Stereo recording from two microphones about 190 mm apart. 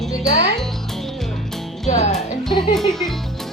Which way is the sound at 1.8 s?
35° left (ahead or behind).